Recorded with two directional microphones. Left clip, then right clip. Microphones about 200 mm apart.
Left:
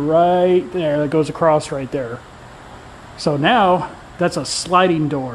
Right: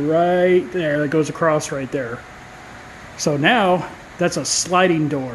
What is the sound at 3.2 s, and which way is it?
A man's voice, centre (ahead or behind).